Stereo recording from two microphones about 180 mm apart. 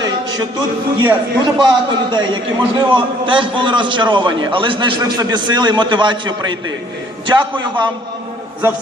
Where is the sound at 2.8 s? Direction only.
30° right (ahead or behind).